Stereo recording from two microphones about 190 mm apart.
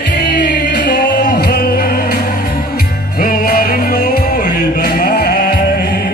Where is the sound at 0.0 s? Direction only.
60° left (ahead or behind).